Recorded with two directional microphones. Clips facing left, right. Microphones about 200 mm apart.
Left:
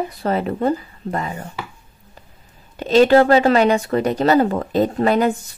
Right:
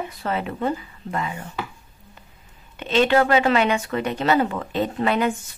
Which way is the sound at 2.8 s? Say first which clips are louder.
Left 6 dB; 40° left (ahead or behind).